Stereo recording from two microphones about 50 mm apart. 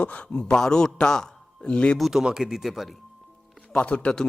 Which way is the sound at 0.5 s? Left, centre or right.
Centre.